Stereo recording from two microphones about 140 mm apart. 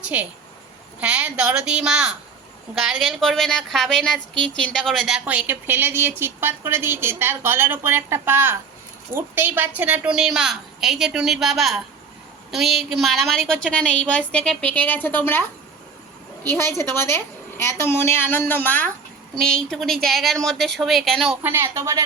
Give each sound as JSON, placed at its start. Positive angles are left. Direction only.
{"t": 0.0, "sound": "a woman's voice", "side_deg": -10}
{"t": 16.5, "sound": "a woman's voice", "side_deg": 20}
{"t": 21.4, "sound": "a woman's voice", "side_deg": -15}